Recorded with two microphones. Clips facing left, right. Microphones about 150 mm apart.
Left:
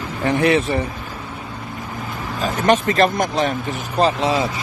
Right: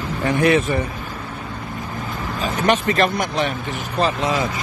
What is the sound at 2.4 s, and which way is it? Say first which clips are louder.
Speech: left 2 dB; 40° left (ahead or behind).